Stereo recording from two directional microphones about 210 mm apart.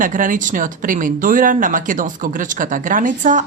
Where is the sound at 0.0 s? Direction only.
40° right (ahead or behind).